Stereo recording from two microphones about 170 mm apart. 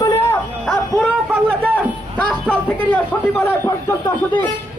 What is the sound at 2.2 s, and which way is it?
A man's voice, 10° left (ahead or behind).